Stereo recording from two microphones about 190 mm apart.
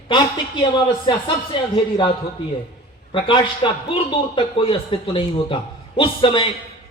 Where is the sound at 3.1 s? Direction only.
25° left (ahead or behind).